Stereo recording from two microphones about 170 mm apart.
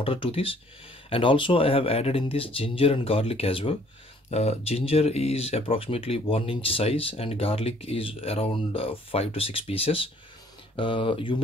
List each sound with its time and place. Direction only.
0.0 s speech: 30° left (ahead or behind)